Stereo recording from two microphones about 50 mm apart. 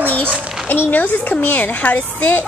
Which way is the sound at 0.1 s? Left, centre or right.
Left.